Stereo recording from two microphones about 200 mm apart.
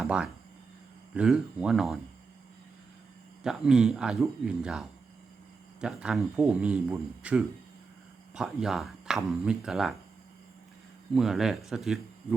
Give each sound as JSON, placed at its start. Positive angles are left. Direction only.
{"t": 0.0, "sound": "speech", "side_deg": -5}
{"t": 3.4, "sound": "speech", "side_deg": -5}
{"t": 11.1, "sound": "speech", "side_deg": 0}